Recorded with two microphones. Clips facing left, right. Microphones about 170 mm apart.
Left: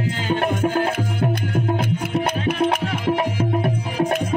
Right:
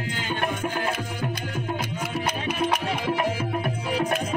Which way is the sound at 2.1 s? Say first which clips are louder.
Left 6 dB; 55° left (ahead or behind).